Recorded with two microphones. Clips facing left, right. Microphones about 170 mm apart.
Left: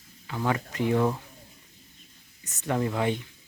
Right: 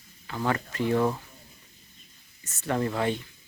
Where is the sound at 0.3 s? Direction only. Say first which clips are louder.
Even; 10° left (ahead or behind).